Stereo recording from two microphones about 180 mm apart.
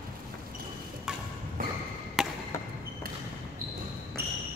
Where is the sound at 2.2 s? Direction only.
Centre (ahead or behind).